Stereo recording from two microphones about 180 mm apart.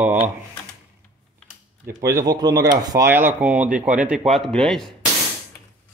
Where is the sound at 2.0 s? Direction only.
20° right (ahead or behind); by 4.9 s 5° left (ahead or behind).